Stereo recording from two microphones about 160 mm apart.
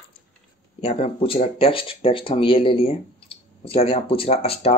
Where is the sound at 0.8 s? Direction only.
40° left (ahead or behind).